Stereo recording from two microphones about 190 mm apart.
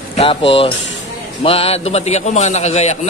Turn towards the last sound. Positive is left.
turn(degrees=35)  # may be behind; listen again after turning